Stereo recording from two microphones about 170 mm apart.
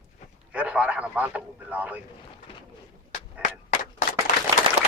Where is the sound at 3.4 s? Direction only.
60° left (ahead or behind).